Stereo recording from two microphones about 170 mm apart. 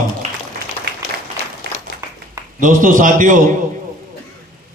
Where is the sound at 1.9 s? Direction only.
70° right (ahead or behind).